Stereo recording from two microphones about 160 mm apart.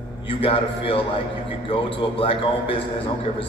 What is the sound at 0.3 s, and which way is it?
A man's voice, 35° left (ahead or behind).